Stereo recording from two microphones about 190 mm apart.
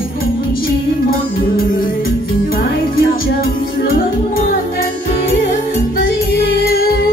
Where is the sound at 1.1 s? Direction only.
50° left (ahead or behind).